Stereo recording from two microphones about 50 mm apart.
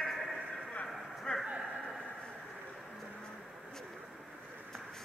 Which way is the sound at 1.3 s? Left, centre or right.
Left.